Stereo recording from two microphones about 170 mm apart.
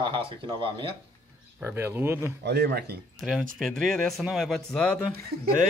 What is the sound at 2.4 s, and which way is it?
Speech, 75° right (ahead or behind).